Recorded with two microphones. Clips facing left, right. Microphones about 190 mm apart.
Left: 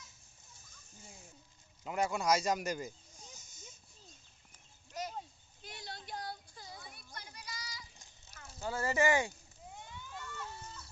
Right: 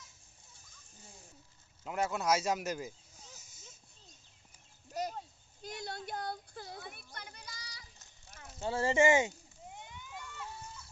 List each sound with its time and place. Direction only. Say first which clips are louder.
1.8 s speech: even; centre (ahead or behind)
3.3 s wheeze: even; 5° right (ahead or behind)
4.9 s a sound: right 4 dB; 40° right (ahead or behind)
5.6 s children playing: right 6 dB; 45° right (ahead or behind)
8.4 s speech: right 4 dB; 25° right (ahead or behind)
9.7 s slosh: left 1 dB; 20° right (ahead or behind)